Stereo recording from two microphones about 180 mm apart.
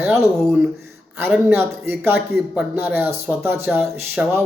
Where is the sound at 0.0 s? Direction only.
15° right (ahead or behind).